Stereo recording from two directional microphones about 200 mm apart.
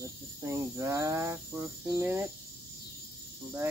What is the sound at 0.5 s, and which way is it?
Speech, 15° right (ahead or behind).